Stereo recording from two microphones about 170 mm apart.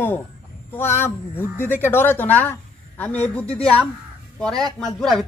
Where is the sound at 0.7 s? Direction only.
10° left (ahead or behind).